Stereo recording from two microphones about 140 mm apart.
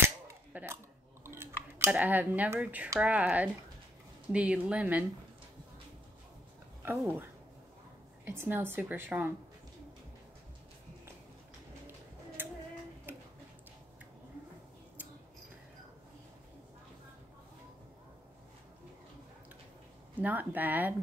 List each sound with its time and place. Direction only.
0.0 s cap gun: 15° right (ahead or behind)
1.2 s a woman's voice: 20° right (ahead or behind)
6.8 s speech: 15° right (ahead or behind)
8.3 s a woman's voice: 15° right (ahead or behind)
12.4 s female singing: 15° right (ahead or behind)
20.2 s a woman's voice: 10° right (ahead or behind)